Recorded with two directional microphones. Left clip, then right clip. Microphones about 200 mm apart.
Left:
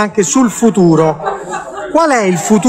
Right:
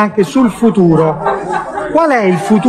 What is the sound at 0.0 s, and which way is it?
A man's voice, 55° left (ahead or behind).